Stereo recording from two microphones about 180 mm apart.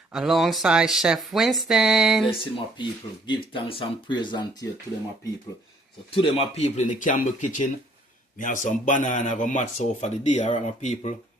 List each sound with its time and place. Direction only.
0.1 s speech: centre (ahead or behind)
2.2 s speech: 30° left (ahead or behind)
6.1 s speech: 30° left (ahead or behind)